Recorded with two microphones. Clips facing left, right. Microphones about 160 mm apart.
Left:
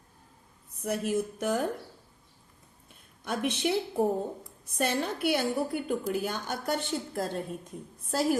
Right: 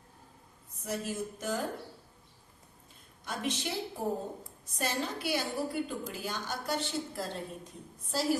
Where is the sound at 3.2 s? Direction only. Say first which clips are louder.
Left 6 dB; 60° left (ahead or behind).